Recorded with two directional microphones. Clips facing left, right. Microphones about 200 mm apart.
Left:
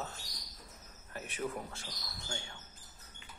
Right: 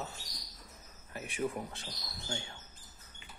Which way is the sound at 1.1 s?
15° right (ahead or behind).